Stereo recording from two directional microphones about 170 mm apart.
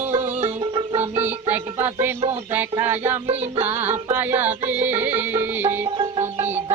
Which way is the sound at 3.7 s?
10° right (ahead or behind).